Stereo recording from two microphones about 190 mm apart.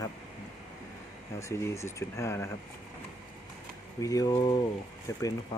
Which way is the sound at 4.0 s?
20° left (ahead or behind).